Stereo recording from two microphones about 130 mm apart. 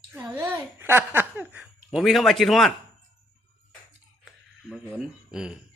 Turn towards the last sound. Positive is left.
turn(degrees=-5)  # may be behind; listen again after turning